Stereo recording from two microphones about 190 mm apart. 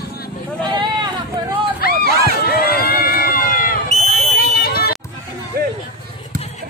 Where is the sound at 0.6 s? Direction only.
25° right (ahead or behind).